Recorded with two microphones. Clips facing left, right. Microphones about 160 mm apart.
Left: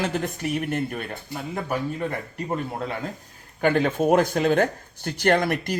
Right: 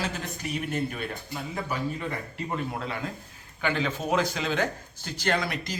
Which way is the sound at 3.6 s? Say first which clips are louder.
Left 8 dB; 50° left (ahead or behind).